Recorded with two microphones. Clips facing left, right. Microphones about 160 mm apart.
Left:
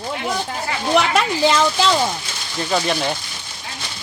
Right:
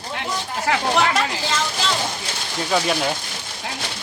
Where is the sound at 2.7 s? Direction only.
Centre (ahead or behind).